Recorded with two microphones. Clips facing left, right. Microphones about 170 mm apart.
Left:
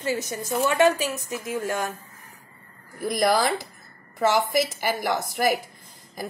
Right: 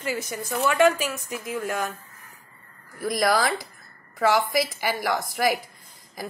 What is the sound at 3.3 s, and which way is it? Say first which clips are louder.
Speech: left 1 dB; 45° left (ahead or behind).